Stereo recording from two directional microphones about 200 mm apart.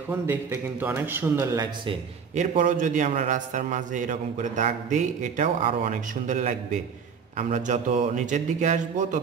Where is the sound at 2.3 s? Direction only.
40° right (ahead or behind).